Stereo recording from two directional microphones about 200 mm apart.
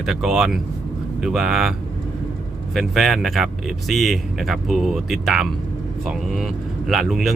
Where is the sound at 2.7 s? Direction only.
Centre (ahead or behind).